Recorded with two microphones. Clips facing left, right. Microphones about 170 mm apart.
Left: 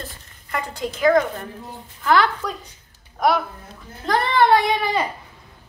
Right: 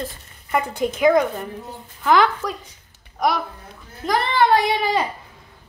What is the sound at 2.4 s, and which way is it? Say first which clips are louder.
Speech: right 1 dB; 10° right (ahead or behind).